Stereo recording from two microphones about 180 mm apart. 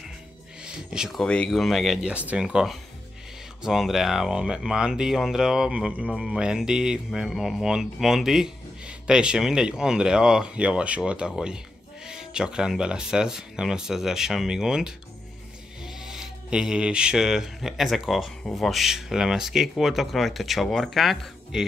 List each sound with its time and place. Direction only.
0.8 s speech: 5° right (ahead or behind)